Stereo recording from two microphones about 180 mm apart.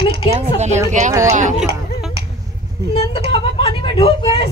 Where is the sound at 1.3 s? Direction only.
45° right (ahead or behind).